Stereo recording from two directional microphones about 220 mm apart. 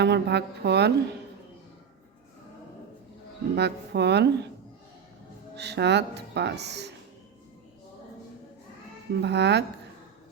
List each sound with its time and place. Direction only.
0.0 s speech: 50° right (ahead or behind)
3.5 s speech: 50° right (ahead or behind)
5.5 s speech: 50° right (ahead or behind)
9.2 s speech: 50° right (ahead or behind)